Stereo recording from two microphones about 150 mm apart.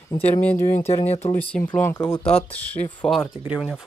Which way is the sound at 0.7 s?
40° left (ahead or behind).